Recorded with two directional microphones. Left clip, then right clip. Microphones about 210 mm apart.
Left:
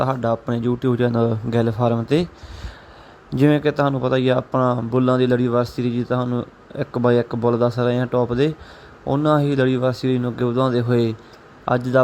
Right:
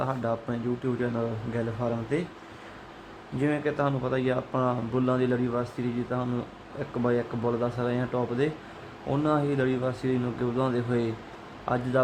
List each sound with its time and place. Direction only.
0.0 s a man's voice: 30° left (ahead or behind)
3.4 s a man's voice: 40° left (ahead or behind)